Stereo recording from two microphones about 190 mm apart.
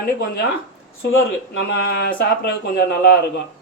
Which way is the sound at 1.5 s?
55° left (ahead or behind).